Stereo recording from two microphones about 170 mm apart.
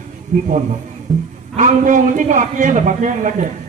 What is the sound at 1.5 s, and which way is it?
A man's voice, 50° right (ahead or behind).